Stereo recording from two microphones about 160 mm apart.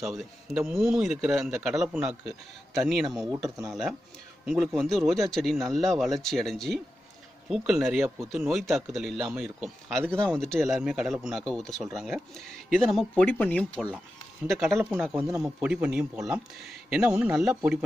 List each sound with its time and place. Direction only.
0.0 s speech: centre (ahead or behind)
3.3 s speech: 20° right (ahead or behind)
3.6 s speech: centre (ahead or behind)